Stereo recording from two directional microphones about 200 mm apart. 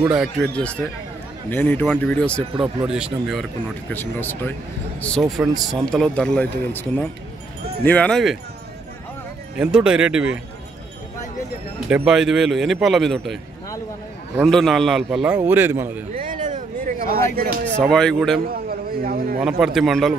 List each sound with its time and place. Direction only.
0.0 s a man's voice: centre (ahead or behind)
3.9 s a man's voice: 10° left (ahead or behind)
9.6 s a man's voice: 5° right (ahead or behind)
11.9 s a man's voice: 5° right (ahead or behind)
14.4 s a man's voice: centre (ahead or behind)
16.2 s a sound: 40° right (ahead or behind)
17.7 s a man's voice: 5° left (ahead or behind)
18.5 s a sound: 50° right (ahead or behind)
19.4 s a man's voice: centre (ahead or behind)